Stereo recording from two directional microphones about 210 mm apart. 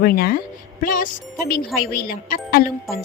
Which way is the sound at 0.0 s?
45° left (ahead or behind).